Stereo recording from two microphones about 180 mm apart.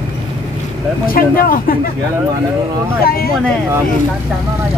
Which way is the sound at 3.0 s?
55° left (ahead or behind).